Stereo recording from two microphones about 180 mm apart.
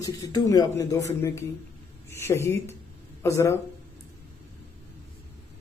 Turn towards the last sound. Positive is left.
turn(degrees=15)  # may be behind; listen again after turning